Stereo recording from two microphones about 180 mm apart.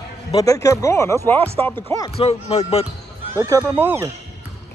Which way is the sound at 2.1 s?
35° left (ahead or behind).